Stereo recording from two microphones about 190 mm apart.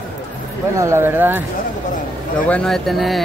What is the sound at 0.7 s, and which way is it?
Speech, 15° right (ahead or behind).